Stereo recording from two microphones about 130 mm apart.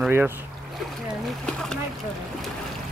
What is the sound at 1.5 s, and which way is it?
Speech, 5° left (ahead or behind).